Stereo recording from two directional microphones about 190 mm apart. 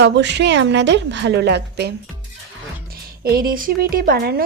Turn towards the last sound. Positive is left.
turn(degrees=-55)  # may be behind; listen again after turning